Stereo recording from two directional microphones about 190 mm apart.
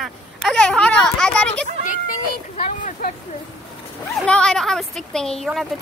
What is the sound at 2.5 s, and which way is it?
Speech, 45° left (ahead or behind).